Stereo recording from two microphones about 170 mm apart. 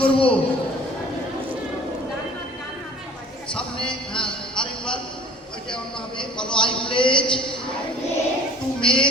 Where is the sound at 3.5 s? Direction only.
5° left (ahead or behind).